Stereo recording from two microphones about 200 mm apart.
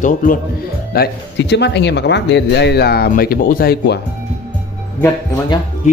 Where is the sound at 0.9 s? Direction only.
55° left (ahead or behind).